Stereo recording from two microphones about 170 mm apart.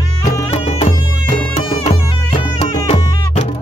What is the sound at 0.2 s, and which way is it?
Music, 40° left (ahead or behind).